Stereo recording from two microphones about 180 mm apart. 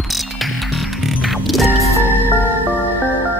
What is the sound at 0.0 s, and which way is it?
Music, centre (ahead or behind).